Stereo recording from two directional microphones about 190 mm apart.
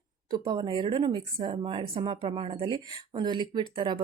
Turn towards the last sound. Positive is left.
turn(degrees=-25)  # may be behind; listen again after turning